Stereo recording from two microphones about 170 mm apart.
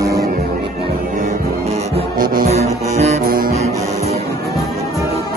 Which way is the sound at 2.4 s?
40° right (ahead or behind).